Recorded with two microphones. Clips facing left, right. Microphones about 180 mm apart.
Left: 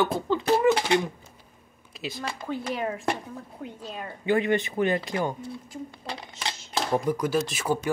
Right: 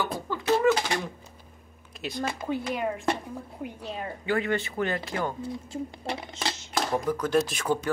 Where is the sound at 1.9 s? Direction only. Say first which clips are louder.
Right 2 dB; centre (ahead or behind).